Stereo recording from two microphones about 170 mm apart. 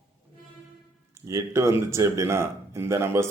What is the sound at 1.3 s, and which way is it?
A man's voice, 15° right (ahead or behind).